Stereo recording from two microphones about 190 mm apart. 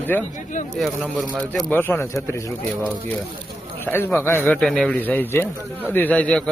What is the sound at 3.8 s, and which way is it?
A man's voice, 10° left (ahead or behind).